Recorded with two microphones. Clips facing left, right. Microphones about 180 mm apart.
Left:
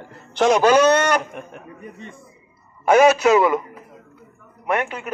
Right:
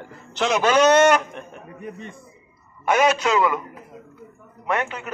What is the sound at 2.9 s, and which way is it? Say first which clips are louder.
Speech: left 6 dB; 25° left (ahead or behind).